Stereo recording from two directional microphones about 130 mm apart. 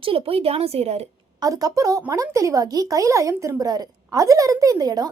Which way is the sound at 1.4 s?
25° right (ahead or behind).